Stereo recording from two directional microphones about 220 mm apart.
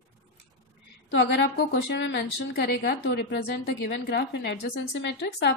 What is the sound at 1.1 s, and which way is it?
Speech, 50° left (ahead or behind).